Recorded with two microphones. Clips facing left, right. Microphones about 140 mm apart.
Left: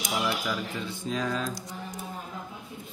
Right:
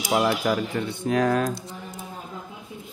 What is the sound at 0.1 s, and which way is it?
Speech, 60° right (ahead or behind).